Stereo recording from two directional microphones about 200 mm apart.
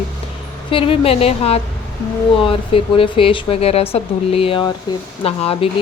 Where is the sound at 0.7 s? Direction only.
25° left (ahead or behind).